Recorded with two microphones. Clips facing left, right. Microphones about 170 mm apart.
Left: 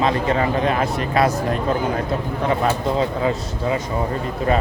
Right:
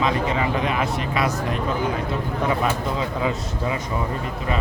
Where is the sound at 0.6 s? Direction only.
35° left (ahead or behind).